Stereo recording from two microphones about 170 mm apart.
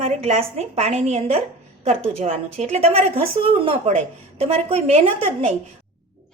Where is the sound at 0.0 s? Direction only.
40° right (ahead or behind).